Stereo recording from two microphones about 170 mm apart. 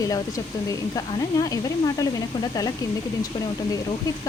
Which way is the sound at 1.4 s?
20° left (ahead or behind).